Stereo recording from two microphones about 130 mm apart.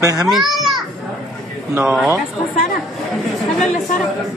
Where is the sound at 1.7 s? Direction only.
10° right (ahead or behind).